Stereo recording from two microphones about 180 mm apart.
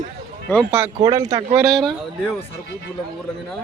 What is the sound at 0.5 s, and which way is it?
Speech, 10° left (ahead or behind).